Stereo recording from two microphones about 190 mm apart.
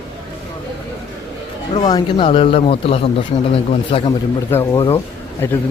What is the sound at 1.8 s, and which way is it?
A man's voice, 25° left (ahead or behind).